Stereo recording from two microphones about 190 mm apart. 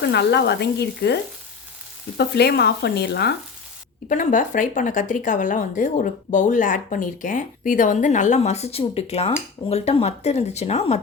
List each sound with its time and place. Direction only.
0.0 s speech: 60° left (ahead or behind)
4.1 s speech: 40° left (ahead or behind)